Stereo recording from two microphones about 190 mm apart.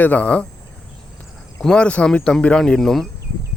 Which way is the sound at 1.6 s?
5° left (ahead or behind).